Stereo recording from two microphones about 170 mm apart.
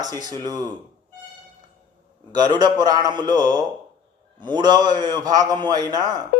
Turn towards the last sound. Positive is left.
turn(degrees=-25)  # may be behind; listen again after turning